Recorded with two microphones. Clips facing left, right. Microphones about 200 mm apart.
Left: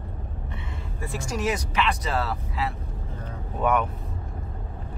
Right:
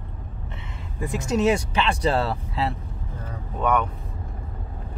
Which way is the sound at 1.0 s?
20° right (ahead or behind).